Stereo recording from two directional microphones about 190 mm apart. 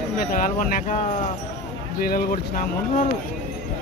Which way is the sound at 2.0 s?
50° left (ahead or behind).